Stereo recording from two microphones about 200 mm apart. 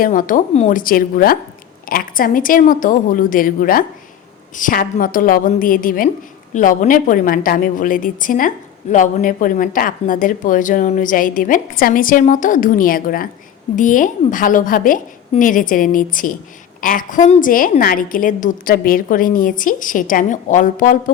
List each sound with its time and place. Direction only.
0.0 s a woman's voice: 45° left (ahead or behind)